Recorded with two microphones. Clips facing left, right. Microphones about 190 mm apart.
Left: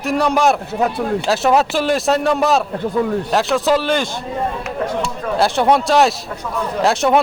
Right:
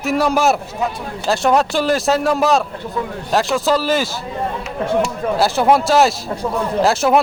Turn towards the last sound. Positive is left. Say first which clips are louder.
# right 1 dB
turn(degrees=0)  # may be behind; listen again after turning